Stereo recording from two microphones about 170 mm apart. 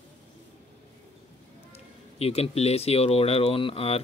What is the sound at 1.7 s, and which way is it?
Speech, 35° left (ahead or behind).